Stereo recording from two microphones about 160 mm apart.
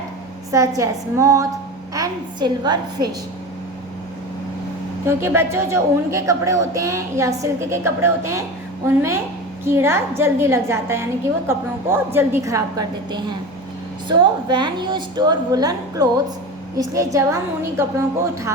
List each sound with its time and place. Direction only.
0.5 s a woman's voice: 20° right (ahead or behind)
5.0 s a woman's voice: 15° right (ahead or behind)
14.1 s a woman's voice: 30° right (ahead or behind)